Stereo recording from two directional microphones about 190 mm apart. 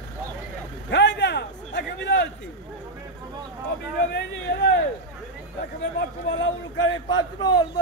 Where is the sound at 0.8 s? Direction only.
65° left (ahead or behind).